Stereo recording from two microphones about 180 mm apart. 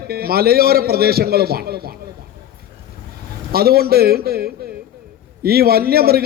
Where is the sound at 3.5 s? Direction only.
60° right (ahead or behind).